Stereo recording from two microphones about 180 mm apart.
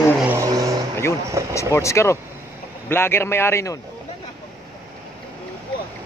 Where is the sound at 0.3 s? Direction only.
20° right (ahead or behind).